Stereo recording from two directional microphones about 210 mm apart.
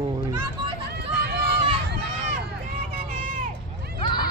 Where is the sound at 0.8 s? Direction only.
55° right (ahead or behind).